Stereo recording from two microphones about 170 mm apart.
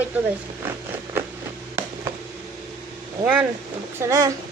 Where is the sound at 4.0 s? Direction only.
15° right (ahead or behind).